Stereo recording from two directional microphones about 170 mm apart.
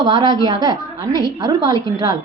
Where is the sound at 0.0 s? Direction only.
25° right (ahead or behind).